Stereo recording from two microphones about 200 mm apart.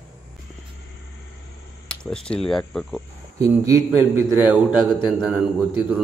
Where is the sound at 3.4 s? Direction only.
15° right (ahead or behind).